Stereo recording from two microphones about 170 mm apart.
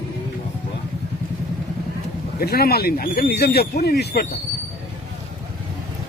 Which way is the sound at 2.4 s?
65° left (ahead or behind).